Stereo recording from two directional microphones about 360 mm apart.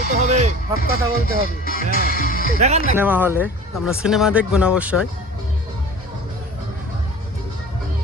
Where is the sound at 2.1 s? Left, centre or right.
Left.